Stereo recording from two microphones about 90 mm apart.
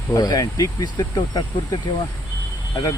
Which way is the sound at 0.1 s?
45° left (ahead or behind).